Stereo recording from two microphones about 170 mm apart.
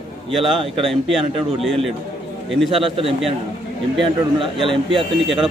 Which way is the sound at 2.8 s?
35° right (ahead or behind).